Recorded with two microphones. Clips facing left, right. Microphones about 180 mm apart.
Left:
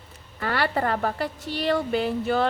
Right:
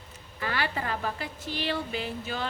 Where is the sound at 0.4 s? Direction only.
55° left (ahead or behind).